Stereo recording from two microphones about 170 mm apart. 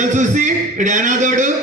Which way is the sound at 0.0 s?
45° right (ahead or behind).